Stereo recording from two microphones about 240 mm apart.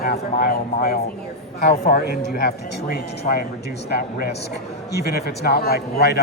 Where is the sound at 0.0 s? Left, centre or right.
Left.